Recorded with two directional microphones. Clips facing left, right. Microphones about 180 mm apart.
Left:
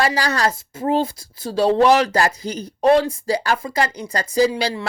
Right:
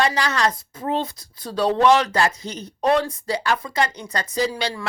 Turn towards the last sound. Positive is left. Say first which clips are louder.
# left 6 dB
turn(degrees=35)  # may be behind; listen again after turning